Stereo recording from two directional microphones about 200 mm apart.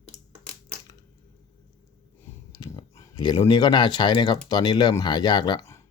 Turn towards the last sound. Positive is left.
turn(degrees=15)  # may be behind; listen again after turning